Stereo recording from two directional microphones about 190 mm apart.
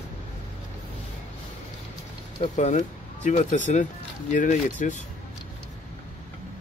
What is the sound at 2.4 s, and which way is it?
Speech, 40° left (ahead or behind).